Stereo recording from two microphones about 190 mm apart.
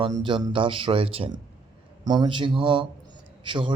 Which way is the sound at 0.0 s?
25° right (ahead or behind).